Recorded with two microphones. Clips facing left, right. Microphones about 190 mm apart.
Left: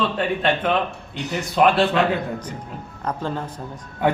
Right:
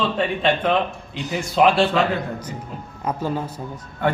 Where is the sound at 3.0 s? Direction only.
10° right (ahead or behind).